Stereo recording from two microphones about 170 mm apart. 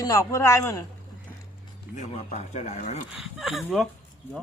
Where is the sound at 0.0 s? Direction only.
20° left (ahead or behind).